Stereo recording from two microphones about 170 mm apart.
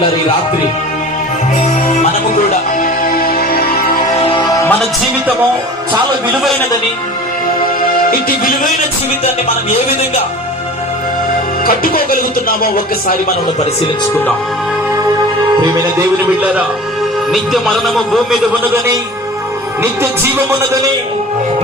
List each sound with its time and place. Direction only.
2.5 s music: 55° left (ahead or behind)
4.3 s music: 25° left (ahead or behind)
7.6 s music: 55° left (ahead or behind)
11.6 s music: 60° left (ahead or behind)
15.6 s music: 20° right (ahead or behind)
17.3 s a man's voice: centre (ahead or behind)